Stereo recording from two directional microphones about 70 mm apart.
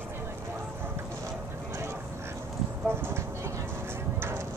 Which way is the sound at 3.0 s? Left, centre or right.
Right.